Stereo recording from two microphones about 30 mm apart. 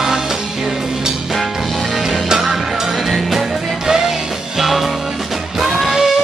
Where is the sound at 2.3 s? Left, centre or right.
Centre.